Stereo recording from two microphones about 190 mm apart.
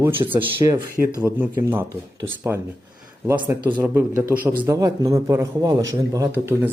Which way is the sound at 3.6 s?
25° right (ahead or behind).